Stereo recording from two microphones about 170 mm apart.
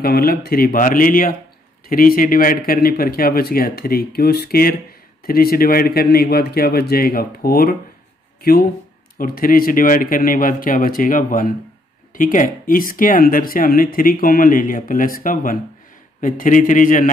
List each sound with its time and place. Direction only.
0.0 s a man's voice: 60° left (ahead or behind)